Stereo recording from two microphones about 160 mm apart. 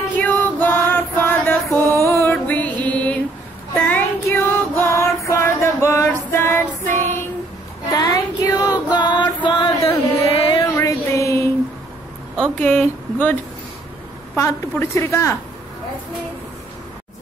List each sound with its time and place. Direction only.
0.2 s music: 10° left (ahead or behind)
3.7 s child singing: 10° left (ahead or behind)
6.3 s music: 15° left (ahead or behind)
7.9 s child singing: 25° left (ahead or behind)
8.9 s music: 30° left (ahead or behind)
10.8 s a sound: 20° left (ahead or behind)
12.4 s a woman's voice: 10° left (ahead or behind)